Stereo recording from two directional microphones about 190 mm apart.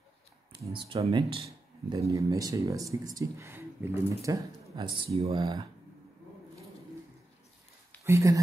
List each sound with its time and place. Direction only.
0.7 s speech: 30° right (ahead or behind)
1.9 s speech: 15° right (ahead or behind)
8.0 s speech: 15° right (ahead or behind)